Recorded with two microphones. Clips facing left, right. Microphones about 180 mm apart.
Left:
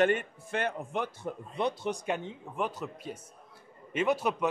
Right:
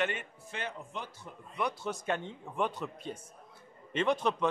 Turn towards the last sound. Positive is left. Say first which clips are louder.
# left 1 dB
turn(degrees=10)  # may be behind; listen again after turning